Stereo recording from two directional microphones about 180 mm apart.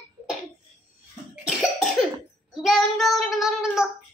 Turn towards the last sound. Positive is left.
turn(degrees=-5)  # may be behind; listen again after turning